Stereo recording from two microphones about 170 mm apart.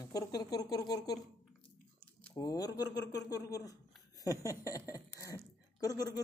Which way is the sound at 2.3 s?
20° left (ahead or behind).